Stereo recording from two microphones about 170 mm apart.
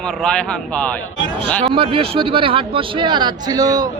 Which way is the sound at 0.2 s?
5° left (ahead or behind).